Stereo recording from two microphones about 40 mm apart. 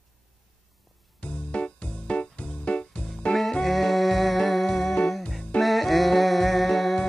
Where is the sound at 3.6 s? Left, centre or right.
Centre.